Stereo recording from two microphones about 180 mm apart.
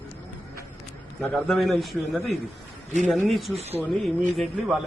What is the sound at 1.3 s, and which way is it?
Speech, centre (ahead or behind).